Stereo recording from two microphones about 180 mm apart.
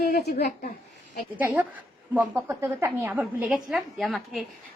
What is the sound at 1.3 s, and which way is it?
A woman's voice, 10° right (ahead or behind).